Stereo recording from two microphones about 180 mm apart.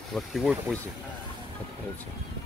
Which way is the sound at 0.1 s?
Centre (ahead or behind).